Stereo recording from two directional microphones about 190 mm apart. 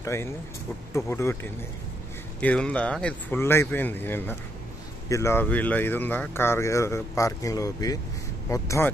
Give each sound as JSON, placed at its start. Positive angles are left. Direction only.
{"t": 0.0, "sound": "speech", "side_deg": 15}